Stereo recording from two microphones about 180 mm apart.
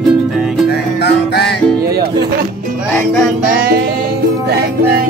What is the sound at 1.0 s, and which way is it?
Music, 65° left (ahead or behind).